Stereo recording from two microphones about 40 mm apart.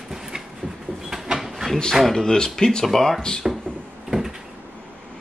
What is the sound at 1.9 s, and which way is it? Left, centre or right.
Speech, centre.